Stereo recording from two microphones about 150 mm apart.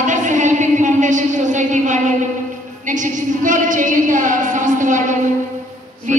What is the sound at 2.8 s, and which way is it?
A woman's voice, 55° right (ahead or behind).